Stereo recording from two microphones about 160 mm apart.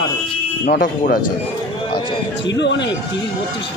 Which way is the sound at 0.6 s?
75° left (ahead or behind).